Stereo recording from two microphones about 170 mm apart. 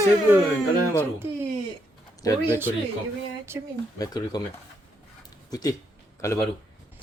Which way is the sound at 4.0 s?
25° left (ahead or behind).